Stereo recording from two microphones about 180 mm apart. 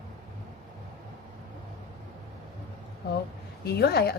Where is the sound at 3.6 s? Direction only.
60° left (ahead or behind).